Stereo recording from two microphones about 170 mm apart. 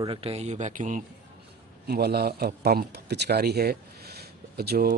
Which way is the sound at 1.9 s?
65° right (ahead or behind).